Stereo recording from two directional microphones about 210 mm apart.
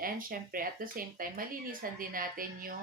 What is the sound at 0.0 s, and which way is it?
Speech, 45° right (ahead or behind).